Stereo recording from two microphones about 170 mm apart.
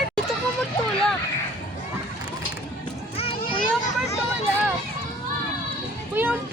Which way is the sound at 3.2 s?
30° left (ahead or behind).